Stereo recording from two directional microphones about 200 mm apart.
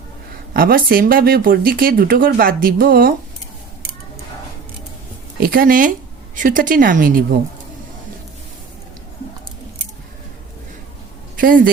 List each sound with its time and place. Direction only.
0.5 s speech: 45° right (ahead or behind)
5.4 s speech: 45° right (ahead or behind)
11.3 s a woman's voice: 45° right (ahead or behind)